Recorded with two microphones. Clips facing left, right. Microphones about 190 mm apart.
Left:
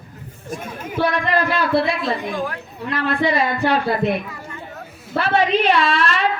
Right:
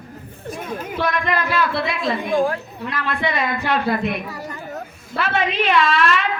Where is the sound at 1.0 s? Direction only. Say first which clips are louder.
Left 3 dB; 30° left (ahead or behind).